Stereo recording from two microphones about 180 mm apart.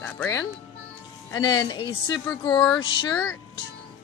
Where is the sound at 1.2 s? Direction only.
25° left (ahead or behind).